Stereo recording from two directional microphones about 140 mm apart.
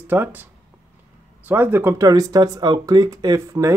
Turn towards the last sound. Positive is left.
turn(degrees=-25)  # may be behind; listen again after turning